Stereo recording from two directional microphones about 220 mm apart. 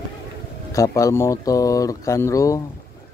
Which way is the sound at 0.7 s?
15° left (ahead or behind).